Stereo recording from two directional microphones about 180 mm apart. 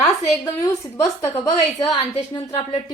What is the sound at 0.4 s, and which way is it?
A woman's voice, 15° left (ahead or behind).